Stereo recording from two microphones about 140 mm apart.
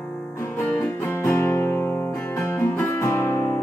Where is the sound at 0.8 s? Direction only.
15° left (ahead or behind).